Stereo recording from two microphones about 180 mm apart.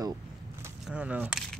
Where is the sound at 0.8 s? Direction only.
5° right (ahead or behind).